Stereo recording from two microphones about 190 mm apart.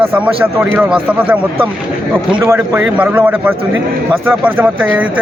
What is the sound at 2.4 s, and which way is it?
Speech, 10° right (ahead or behind).